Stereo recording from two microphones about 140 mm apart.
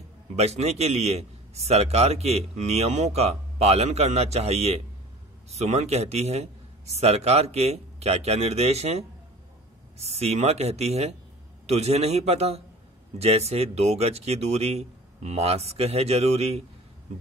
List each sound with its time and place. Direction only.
0.4 s a man's voice: 50° right (ahead or behind)